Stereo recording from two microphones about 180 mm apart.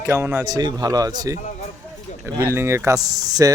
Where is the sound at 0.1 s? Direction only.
15° right (ahead or behind).